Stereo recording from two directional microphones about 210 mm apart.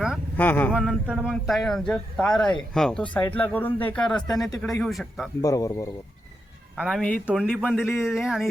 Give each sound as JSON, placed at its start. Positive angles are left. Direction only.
{"t": 0.3, "sound": "speech", "side_deg": 10}
{"t": 5.4, "sound": "speech", "side_deg": 15}
{"t": 6.7, "sound": "speech", "side_deg": 0}